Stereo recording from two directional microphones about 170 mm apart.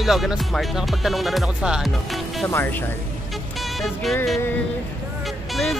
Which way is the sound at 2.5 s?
10° left (ahead or behind).